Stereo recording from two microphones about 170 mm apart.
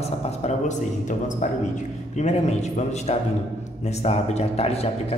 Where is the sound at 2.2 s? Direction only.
40° left (ahead or behind).